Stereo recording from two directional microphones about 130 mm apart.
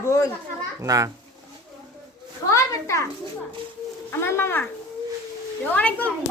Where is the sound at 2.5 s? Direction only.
20° left (ahead or behind).